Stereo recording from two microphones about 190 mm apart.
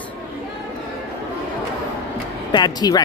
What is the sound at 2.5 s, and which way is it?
Speech, 20° left (ahead or behind).